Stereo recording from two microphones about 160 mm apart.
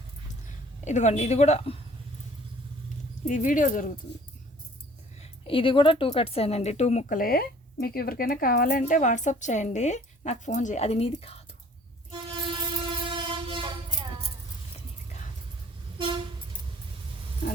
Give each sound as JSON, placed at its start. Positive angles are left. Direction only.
{"t": 0.9, "sound": "a woman's voice", "side_deg": 50}
{"t": 3.2, "sound": "speech", "side_deg": 55}
{"t": 5.2, "sound": "speech", "side_deg": 35}
{"t": 7.2, "sound": "speech", "side_deg": 70}
{"t": 8.7, "sound": "a woman's voice", "side_deg": 50}
{"t": 13.1, "sound": "train", "side_deg": -30}
{"t": 15.1, "sound": "vehicle", "side_deg": 45}
{"t": 16.0, "sound": "vehicle", "side_deg": -30}